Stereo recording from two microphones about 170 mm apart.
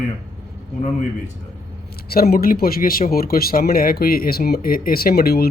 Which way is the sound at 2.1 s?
60° left (ahead or behind).